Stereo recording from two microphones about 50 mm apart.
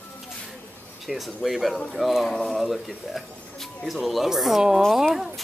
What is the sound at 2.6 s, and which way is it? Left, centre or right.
Speech, centre.